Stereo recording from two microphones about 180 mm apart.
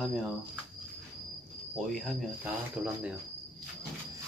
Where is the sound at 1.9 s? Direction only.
Centre (ahead or behind).